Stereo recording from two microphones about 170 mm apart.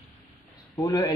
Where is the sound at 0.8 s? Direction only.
25° left (ahead or behind).